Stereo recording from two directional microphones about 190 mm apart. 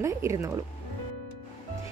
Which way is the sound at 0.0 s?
15° right (ahead or behind).